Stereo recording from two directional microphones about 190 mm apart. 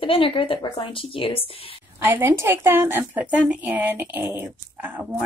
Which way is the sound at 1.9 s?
10° right (ahead or behind).